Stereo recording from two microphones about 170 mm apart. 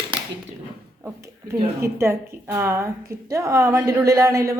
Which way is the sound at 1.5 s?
15° right (ahead or behind).